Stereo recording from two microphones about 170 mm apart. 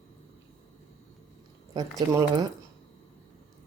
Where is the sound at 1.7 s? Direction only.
25° right (ahead or behind).